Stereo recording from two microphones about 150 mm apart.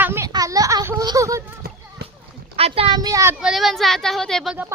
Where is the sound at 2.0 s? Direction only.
90° right.